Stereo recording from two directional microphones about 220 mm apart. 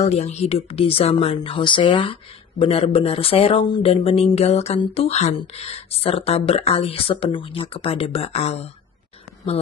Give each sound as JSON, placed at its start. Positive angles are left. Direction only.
{"t": 0.0, "sound": "speech", "side_deg": 30}